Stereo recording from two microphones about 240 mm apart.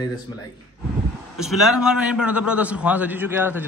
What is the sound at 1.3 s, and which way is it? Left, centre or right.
A man's voice, centre.